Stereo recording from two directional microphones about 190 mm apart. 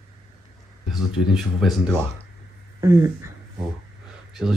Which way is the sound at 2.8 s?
15° right (ahead or behind).